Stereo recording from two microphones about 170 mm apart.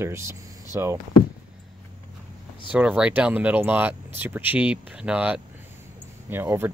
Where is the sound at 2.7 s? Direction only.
10° right (ahead or behind).